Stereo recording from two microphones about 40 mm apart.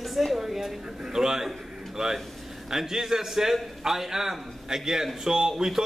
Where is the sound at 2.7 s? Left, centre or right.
Centre.